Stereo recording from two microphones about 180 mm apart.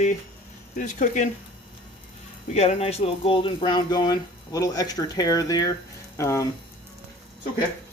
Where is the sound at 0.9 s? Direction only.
40° left (ahead or behind).